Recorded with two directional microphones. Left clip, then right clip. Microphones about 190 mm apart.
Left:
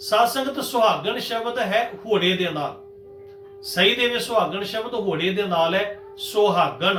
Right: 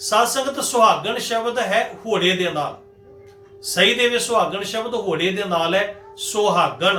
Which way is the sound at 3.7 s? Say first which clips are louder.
Right 3 dB; 15° right (ahead or behind).